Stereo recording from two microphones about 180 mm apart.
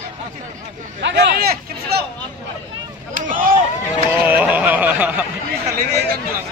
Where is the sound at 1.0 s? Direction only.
70° right (ahead or behind).